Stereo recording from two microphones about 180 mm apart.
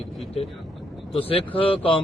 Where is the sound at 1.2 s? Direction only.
30° left (ahead or behind).